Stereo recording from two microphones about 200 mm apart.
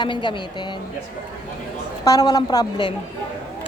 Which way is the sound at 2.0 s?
20° left (ahead or behind).